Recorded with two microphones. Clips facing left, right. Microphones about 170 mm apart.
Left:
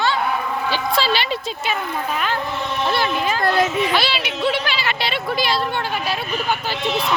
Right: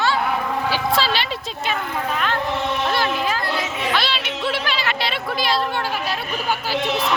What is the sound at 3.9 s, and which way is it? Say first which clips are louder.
Music: left 2 dB; 5° left (ahead or behind).